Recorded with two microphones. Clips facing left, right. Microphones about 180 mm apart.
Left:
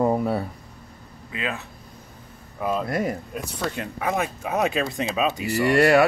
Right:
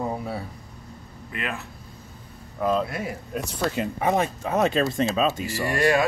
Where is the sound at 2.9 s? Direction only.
45° left (ahead or behind).